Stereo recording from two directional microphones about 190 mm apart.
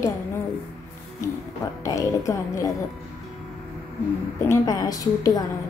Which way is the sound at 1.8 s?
15° left (ahead or behind).